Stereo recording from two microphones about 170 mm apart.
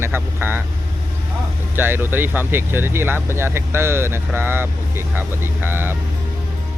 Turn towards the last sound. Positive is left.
turn(degrees=-10)  # may be behind; listen again after turning